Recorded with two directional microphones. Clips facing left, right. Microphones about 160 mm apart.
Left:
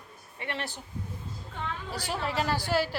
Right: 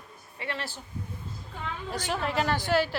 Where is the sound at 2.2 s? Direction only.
5° left (ahead or behind).